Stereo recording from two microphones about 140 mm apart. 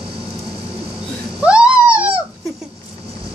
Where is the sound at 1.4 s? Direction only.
10° right (ahead or behind).